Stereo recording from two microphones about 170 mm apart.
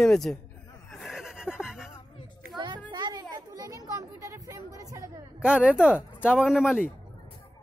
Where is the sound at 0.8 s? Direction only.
Centre (ahead or behind).